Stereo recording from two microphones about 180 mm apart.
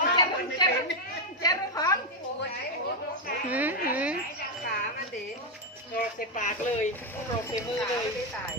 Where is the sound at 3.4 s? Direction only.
10° right (ahead or behind).